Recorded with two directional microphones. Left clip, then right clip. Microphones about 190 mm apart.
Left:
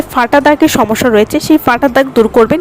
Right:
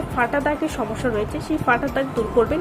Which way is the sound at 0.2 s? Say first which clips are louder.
Left 13 dB; 60° left (ahead or behind).